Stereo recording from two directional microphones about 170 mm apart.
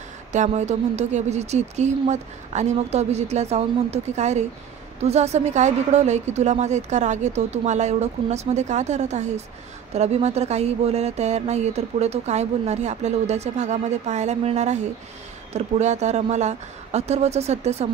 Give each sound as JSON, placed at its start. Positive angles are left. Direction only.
{"t": 0.3, "sound": "speech", "side_deg": -45}